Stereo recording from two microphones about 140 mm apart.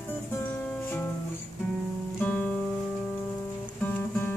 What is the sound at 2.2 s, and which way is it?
Music, 10° left (ahead or behind).